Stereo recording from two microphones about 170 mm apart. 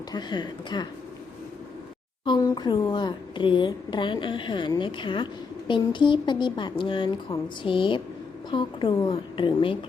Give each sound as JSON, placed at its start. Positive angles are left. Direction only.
{"t": 0.1, "sound": "a woman's voice", "side_deg": 25}
{"t": 2.2, "sound": "a woman's voice", "side_deg": 25}